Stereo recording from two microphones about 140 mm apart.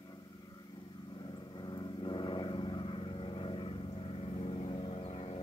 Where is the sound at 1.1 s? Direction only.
35° left (ahead or behind).